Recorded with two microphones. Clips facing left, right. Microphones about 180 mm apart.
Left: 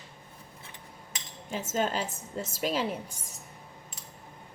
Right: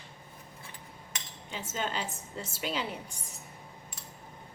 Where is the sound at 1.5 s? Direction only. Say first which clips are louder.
Left 6 dB; 45° left (ahead or behind).